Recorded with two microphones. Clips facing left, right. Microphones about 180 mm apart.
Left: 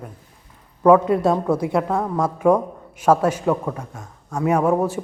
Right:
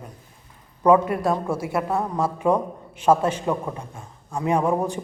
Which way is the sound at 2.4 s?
10° left (ahead or behind).